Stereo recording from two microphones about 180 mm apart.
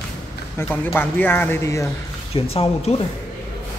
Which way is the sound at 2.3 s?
35° left (ahead or behind).